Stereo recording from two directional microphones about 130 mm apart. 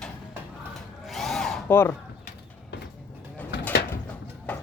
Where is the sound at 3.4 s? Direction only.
10° left (ahead or behind).